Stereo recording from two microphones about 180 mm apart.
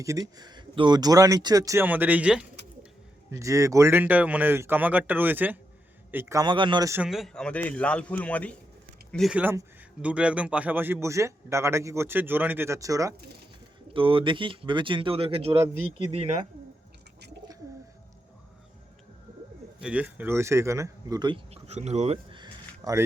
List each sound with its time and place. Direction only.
0.0 s speech: 20° right (ahead or behind)
3.2 s a man's voice: 15° right (ahead or behind)
7.0 s speech: centre (ahead or behind)
9.1 s a man's voice: 5° right (ahead or behind); by 13.1 s 20° right (ahead or behind)
13.9 s speech: 30° right (ahead or behind)
19.8 s speech: 5° right (ahead or behind)